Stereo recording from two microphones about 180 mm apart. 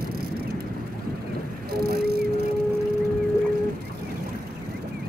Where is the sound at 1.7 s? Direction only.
60° right (ahead or behind).